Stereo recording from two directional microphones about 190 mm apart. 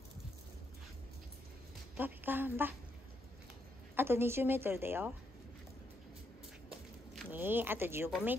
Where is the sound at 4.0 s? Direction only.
10° right (ahead or behind).